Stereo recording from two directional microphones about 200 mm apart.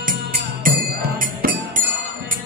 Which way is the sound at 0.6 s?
45° right (ahead or behind).